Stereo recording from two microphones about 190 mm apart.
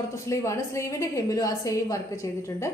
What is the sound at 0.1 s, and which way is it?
A woman's voice, 15° left (ahead or behind).